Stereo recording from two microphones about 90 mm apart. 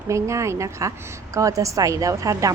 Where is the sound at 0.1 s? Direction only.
35° right (ahead or behind).